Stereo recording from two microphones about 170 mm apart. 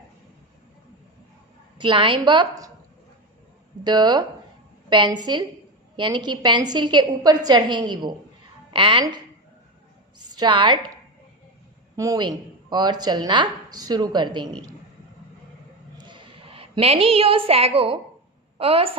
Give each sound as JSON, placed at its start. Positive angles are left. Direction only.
{"t": 1.8, "sound": "speech", "side_deg": -30}
{"t": 3.8, "sound": "a woman's voice", "side_deg": -25}
{"t": 11.9, "sound": "speech", "side_deg": -20}
{"t": 16.0, "sound": "a sound", "side_deg": -30}
{"t": 18.5, "sound": "a woman's voice", "side_deg": -35}